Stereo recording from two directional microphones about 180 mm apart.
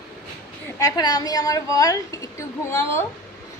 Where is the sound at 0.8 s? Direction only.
20° left (ahead or behind).